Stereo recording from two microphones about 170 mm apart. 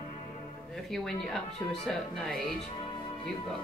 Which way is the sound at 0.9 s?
Centre (ahead or behind).